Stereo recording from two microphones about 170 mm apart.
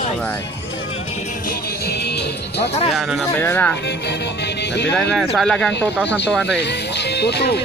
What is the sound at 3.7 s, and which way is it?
Speech, 90° left.